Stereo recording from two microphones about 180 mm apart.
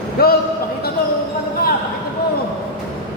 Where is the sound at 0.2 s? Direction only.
60° left (ahead or behind).